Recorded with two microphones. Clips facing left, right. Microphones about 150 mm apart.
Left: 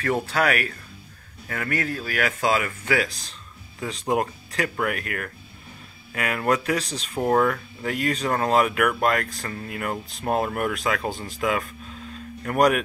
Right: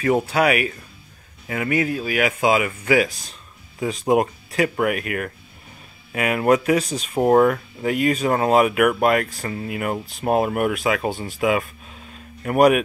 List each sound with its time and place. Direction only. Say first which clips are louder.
0.0 s speech: right 5 dB; 15° right (ahead or behind)